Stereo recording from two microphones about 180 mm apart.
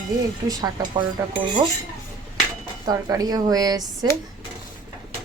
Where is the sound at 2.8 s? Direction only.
20° right (ahead or behind).